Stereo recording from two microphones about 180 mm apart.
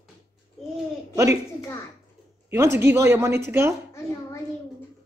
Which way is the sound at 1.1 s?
15° right (ahead or behind).